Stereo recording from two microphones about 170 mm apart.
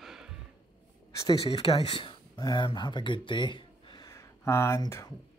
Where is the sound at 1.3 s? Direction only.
30° left (ahead or behind).